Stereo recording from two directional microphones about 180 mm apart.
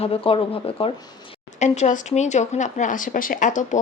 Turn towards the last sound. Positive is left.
turn(degrees=45)  # may be behind; listen again after turning